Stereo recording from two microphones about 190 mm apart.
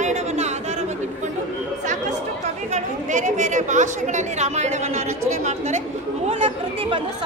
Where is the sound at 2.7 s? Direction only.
40° right (ahead or behind).